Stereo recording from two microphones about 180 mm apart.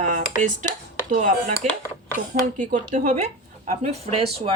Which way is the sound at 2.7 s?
45° right (ahead or behind).